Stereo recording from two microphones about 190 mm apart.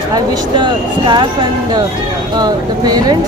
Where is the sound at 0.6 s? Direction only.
25° right (ahead or behind).